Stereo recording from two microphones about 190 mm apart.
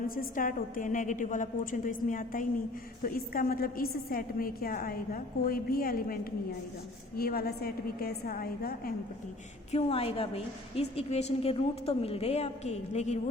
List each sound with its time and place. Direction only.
0.2 s a woman's voice: 45° left (ahead or behind)
7.2 s a woman's voice: 50° left (ahead or behind)
9.7 s a woman's voice: 30° left (ahead or behind)